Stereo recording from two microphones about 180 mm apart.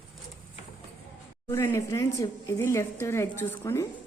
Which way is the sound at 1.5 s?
15° left (ahead or behind).